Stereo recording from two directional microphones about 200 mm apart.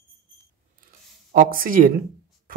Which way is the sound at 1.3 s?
45° right (ahead or behind).